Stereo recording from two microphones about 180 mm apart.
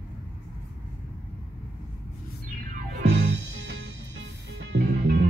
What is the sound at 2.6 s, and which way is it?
Music, 50° right (ahead or behind).